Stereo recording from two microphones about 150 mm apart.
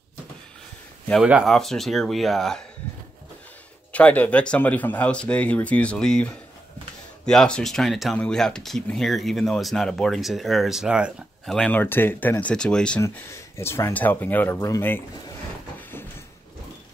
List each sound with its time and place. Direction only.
1.2 s speech: 5° right (ahead or behind)
3.9 s speech: 10° left (ahead or behind)
11.5 s speech: 10° left (ahead or behind)
13.0 s speech: 15° left (ahead or behind)